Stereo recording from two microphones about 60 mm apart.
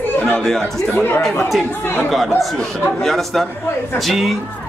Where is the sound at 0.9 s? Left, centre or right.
Left.